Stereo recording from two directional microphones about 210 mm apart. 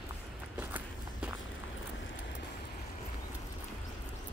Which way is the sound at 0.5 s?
10° right (ahead or behind).